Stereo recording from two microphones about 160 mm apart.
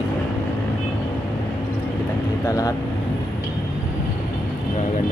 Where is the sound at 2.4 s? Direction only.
20° left (ahead or behind).